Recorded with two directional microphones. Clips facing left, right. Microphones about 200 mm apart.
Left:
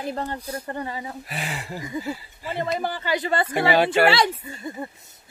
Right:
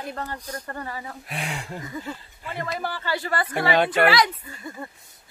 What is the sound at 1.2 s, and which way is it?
Speech, centre (ahead or behind).